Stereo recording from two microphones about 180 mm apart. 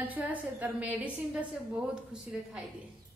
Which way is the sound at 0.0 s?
10° right (ahead or behind).